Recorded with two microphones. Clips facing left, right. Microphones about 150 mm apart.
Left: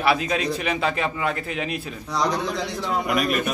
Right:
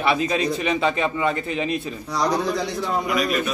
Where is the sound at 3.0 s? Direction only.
55° left (ahead or behind).